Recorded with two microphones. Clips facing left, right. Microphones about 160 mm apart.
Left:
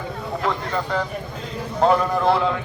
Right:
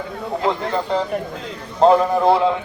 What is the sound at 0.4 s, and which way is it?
A man's voice, 25° right (ahead or behind).